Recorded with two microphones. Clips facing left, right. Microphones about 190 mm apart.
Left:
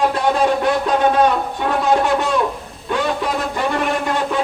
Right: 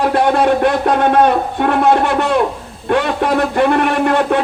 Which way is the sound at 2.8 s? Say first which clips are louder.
Right 5 dB; 60° right (ahead or behind).